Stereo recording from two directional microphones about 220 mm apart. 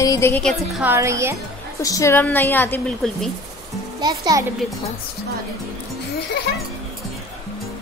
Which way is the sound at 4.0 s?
15° right (ahead or behind).